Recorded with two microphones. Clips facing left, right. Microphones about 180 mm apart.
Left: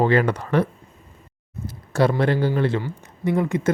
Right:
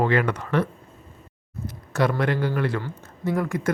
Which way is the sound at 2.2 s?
30° left (ahead or behind).